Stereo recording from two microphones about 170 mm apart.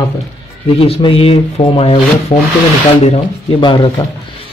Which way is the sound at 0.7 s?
35° left (ahead or behind).